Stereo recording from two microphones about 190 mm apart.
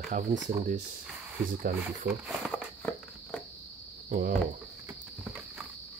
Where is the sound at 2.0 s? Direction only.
5° right (ahead or behind).